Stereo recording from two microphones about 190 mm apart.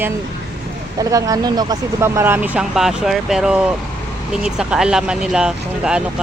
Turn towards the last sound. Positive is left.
turn(degrees=-5)  # may be behind; listen again after turning